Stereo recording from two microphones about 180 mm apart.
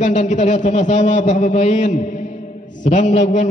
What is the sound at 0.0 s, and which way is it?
A man's voice, 45° left (ahead or behind).